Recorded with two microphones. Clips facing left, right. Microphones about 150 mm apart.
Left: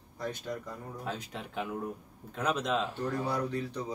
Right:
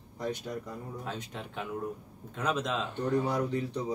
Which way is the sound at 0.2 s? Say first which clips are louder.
Right 2 dB; 15° right (ahead or behind).